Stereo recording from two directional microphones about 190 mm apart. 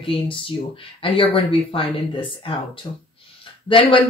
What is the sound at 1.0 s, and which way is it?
Speech, 30° left (ahead or behind).